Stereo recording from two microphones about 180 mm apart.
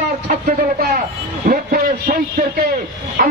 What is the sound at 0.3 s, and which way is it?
A man's voice, 50° right (ahead or behind).